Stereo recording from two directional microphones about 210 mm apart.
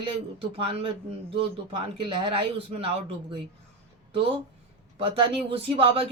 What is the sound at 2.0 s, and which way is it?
Speech, 25° right (ahead or behind).